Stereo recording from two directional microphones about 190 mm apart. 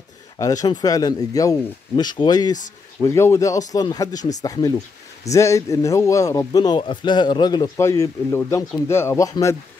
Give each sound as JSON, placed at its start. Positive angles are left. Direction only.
{"t": 0.4, "sound": "speech", "side_deg": 20}